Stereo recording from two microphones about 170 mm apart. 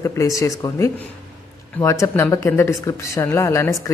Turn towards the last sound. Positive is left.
turn(degrees=15)  # may be behind; listen again after turning